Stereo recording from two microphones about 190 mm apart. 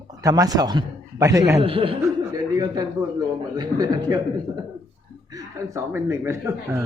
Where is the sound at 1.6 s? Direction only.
30° right (ahead or behind).